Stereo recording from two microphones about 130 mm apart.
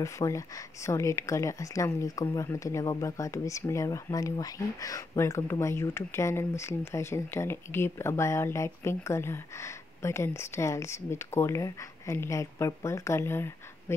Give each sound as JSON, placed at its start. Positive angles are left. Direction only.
{"t": 0.0, "sound": "speech", "side_deg": 25}